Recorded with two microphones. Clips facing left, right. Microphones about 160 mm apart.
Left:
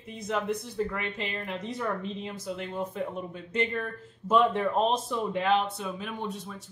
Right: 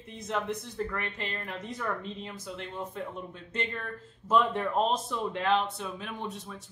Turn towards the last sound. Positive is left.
turn(degrees=0)  # may be behind; listen again after turning